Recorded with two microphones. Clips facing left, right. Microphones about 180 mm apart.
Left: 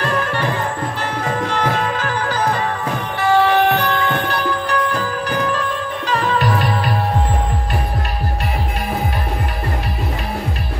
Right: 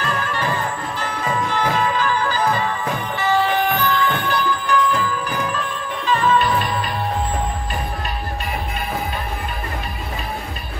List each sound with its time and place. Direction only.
0.0 s music: 65° left (ahead or behind)